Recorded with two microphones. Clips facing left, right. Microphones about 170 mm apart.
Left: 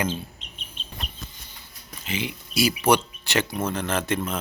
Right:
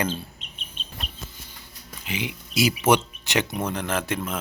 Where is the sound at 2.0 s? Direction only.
15° right (ahead or behind).